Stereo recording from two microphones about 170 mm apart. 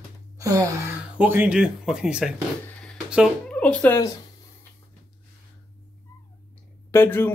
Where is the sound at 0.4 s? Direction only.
20° right (ahead or behind).